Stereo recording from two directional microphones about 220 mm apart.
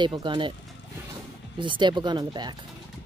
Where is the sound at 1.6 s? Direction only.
20° right (ahead or behind).